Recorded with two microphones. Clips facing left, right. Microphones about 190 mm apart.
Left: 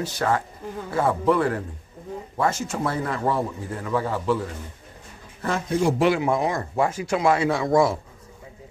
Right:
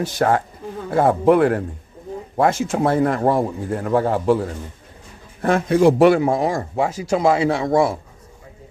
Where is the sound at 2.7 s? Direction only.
50° right (ahead or behind).